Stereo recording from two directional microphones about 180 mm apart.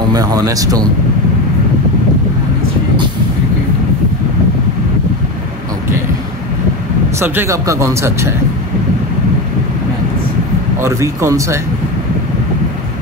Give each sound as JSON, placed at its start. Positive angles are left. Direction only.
{"t": 0.1, "sound": "speech", "side_deg": -20}
{"t": 7.2, "sound": "speech", "side_deg": -15}
{"t": 10.8, "sound": "speech", "side_deg": -15}